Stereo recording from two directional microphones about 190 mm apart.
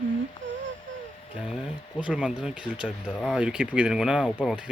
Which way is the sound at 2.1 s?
5° right (ahead or behind).